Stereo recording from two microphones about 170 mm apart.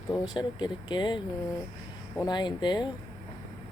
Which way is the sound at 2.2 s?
25° left (ahead or behind).